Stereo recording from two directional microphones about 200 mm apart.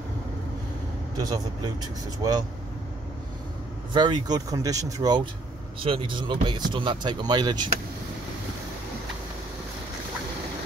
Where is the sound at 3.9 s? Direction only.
20° right (ahead or behind).